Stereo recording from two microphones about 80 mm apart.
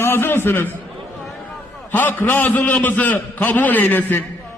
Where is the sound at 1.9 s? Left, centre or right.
Left.